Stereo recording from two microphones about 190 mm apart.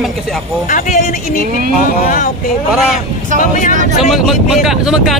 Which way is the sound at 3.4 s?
45° left (ahead or behind).